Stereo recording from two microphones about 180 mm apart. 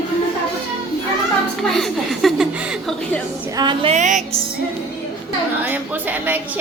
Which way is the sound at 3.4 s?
20° right (ahead or behind).